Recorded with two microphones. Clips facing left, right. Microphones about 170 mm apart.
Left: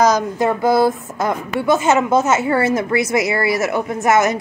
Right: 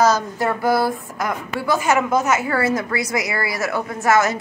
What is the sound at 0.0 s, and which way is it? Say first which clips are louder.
A woman's voice: left 3 dB; 15° left (ahead or behind).